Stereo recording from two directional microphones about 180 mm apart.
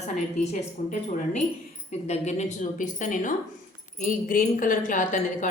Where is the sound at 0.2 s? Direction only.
45° left (ahead or behind).